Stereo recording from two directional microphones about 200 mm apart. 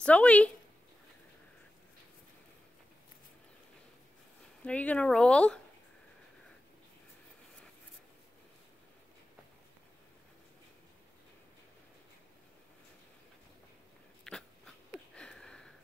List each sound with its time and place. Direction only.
0.0 s speech: 5° left (ahead or behind)
4.6 s speech: 5° left (ahead or behind)
14.3 s a sound: 5° left (ahead or behind)